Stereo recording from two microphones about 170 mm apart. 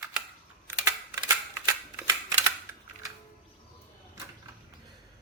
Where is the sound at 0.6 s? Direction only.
20° right (ahead or behind).